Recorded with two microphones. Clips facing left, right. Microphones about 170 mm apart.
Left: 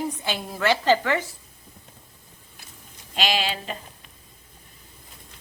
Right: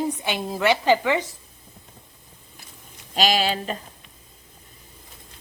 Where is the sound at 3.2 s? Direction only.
40° right (ahead or behind).